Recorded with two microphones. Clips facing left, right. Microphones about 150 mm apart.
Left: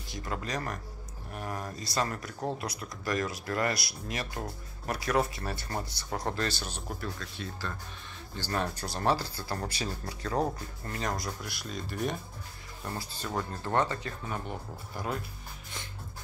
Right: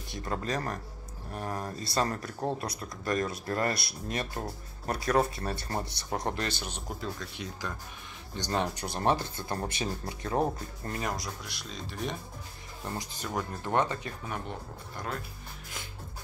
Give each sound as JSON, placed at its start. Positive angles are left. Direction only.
{"t": 0.1, "sound": "speech", "side_deg": -30}
{"t": 11.0, "sound": "speech", "side_deg": 0}
{"t": 12.8, "sound": "speech", "side_deg": -15}